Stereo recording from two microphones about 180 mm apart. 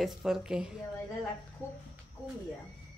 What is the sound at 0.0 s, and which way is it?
Speech, 5° right (ahead or behind).